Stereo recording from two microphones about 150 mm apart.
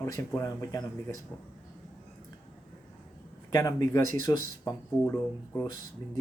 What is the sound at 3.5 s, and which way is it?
Speech, 25° left (ahead or behind).